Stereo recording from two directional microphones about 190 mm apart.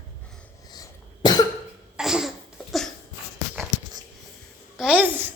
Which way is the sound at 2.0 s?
Centre (ahead or behind).